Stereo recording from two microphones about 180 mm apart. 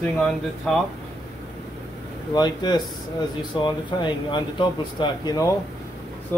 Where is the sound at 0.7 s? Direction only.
5° left (ahead or behind).